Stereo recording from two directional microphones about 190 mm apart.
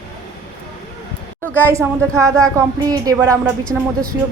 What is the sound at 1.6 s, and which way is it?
A woman's voice, 15° right (ahead or behind).